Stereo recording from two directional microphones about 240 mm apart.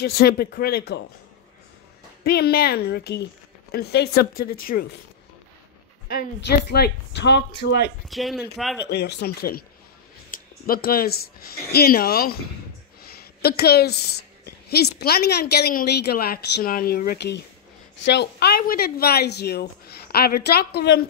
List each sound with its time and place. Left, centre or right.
0.0 s a woman's voice: left
2.2 s a woman's voice: left
6.0 s speech: left
8.1 s speech: centre
8.8 s a woman's voice: left